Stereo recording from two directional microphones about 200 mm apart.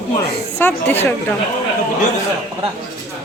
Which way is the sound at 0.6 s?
10° left (ahead or behind).